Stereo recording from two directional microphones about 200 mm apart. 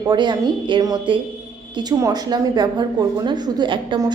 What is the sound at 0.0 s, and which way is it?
A woman's voice, 20° right (ahead or behind).